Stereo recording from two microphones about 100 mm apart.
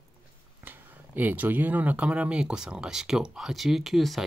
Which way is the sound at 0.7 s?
20° right (ahead or behind).